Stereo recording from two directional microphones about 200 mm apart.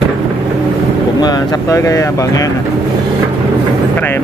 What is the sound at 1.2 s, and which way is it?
Speech, 20° left (ahead or behind).